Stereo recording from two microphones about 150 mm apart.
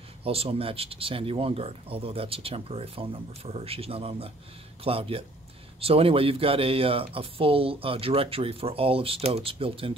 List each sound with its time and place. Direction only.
0.2 s speech: 40° right (ahead or behind)